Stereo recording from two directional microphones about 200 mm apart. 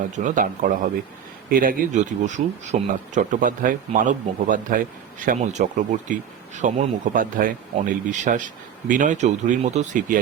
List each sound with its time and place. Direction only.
0.2 s speech: 40° right (ahead or behind)
1.5 s speech: 45° right (ahead or behind)